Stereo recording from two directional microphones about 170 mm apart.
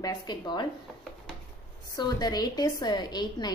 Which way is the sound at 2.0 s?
25° left (ahead or behind).